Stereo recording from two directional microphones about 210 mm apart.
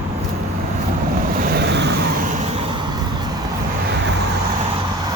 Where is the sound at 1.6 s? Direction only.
55° right (ahead or behind).